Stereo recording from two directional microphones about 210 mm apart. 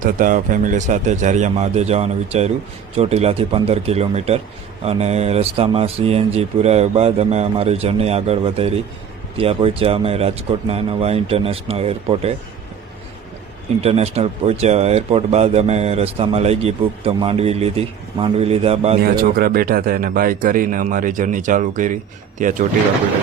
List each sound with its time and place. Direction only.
0.0 s a man's voice: 40° right (ahead or behind)
13.8 s speech: 30° right (ahead or behind)
19.0 s a man's voice: 45° right (ahead or behind)